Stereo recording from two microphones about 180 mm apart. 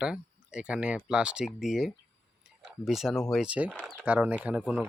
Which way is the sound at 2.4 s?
Centre (ahead or behind).